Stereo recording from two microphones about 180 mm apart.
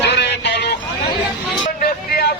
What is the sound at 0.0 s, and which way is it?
Vehicle, 70° left (ahead or behind).